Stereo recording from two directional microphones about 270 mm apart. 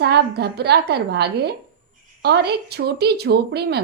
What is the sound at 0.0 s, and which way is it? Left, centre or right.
Speech, right.